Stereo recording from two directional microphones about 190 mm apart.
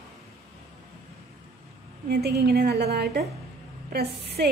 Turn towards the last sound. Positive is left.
turn(degrees=-60)  # may be behind; listen again after turning